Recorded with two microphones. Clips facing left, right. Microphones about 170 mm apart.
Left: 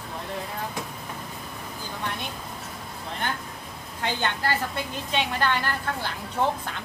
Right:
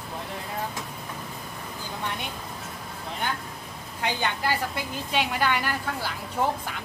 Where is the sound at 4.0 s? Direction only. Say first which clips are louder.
Even; 10° right (ahead or behind).